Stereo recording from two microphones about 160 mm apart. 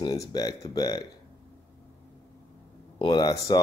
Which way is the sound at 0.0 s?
25° left (ahead or behind).